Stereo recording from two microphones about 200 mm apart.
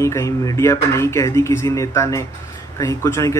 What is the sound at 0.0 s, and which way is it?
Speech, 15° left (ahead or behind).